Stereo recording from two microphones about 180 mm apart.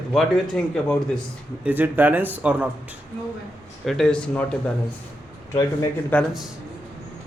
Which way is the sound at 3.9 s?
5° left (ahead or behind).